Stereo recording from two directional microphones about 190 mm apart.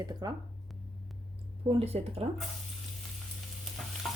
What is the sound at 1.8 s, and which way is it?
Speech, 30° right (ahead or behind).